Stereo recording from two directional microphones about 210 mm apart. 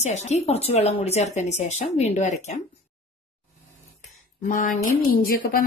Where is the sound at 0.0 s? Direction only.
30° left (ahead or behind).